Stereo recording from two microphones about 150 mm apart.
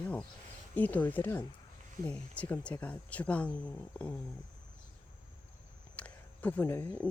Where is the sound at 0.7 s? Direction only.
10° left (ahead or behind).